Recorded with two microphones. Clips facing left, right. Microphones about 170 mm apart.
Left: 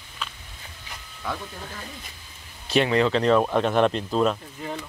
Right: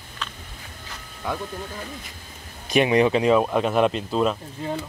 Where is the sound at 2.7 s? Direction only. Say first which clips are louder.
Right 2 dB; 15° right (ahead or behind).